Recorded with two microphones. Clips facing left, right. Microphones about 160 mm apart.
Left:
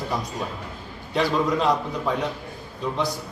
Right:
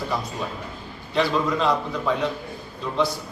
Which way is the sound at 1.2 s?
15° left (ahead or behind).